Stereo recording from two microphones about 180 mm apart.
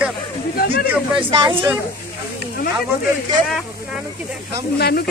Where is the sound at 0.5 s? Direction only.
60° left (ahead or behind).